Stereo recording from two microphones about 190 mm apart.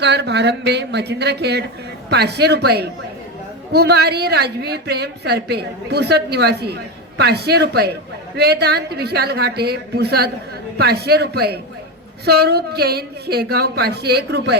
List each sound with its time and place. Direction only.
0.0 s a woman's voice: 65° right (ahead or behind)